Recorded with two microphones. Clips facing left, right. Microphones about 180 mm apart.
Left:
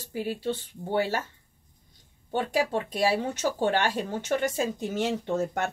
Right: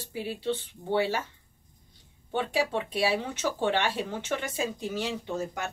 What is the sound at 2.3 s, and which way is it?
Speech, 45° left (ahead or behind).